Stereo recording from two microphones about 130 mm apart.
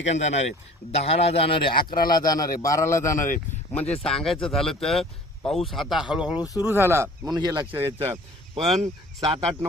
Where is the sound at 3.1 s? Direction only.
90° left.